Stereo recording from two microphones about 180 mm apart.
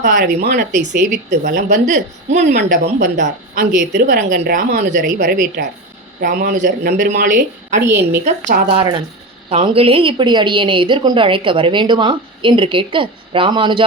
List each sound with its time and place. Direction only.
0.0 s a woman's voice: 45° right (ahead or behind)
0.3 s speech: 65° right (ahead or behind)
0.6 s a woman's voice: 45° right (ahead or behind)
2.4 s speech: 65° right (ahead or behind)
2.6 s a woman's voice: 45° right (ahead or behind); by 5.6 s 60° right (ahead or behind)
6.2 s a woman's voice: 45° right (ahead or behind)
7.9 s a woman's voice: 15° right (ahead or behind)
8.2 s a woman's voice: 45° right (ahead or behind)
8.7 s a woman's voice: 30° right (ahead or behind)